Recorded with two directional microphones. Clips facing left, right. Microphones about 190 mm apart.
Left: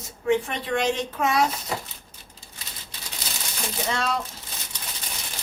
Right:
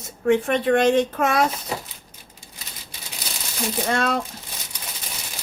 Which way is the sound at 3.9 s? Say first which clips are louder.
Right 4 dB; 55° right (ahead or behind).